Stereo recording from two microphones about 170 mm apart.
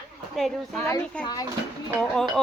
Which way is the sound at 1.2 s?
25° left (ahead or behind).